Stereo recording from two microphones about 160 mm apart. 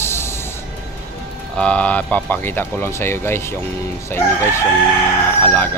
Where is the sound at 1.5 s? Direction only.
5° left (ahead or behind).